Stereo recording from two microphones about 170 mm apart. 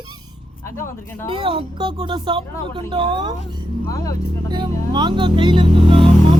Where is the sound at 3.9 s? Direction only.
20° left (ahead or behind).